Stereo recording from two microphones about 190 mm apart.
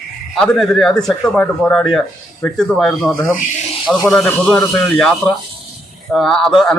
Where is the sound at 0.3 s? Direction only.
5° left (ahead or behind).